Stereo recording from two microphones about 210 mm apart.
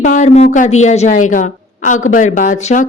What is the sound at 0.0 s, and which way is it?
A woman's voice, 35° left (ahead or behind).